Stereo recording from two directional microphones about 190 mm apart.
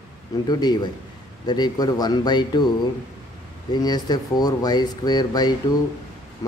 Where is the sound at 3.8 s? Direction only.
20° left (ahead or behind).